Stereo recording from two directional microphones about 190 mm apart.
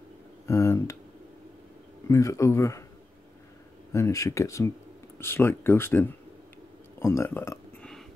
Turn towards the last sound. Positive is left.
turn(degrees=10)  # may be behind; listen again after turning